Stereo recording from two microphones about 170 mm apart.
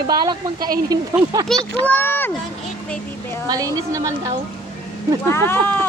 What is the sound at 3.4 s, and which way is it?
Speech, 20° right (ahead or behind).